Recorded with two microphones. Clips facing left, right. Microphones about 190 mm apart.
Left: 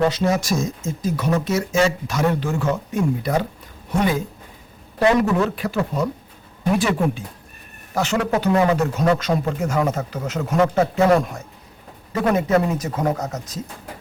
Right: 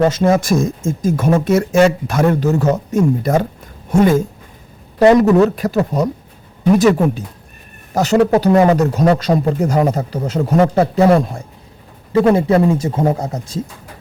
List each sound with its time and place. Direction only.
0.1 s speech: 50° right (ahead or behind); by 13.6 s 30° right (ahead or behind)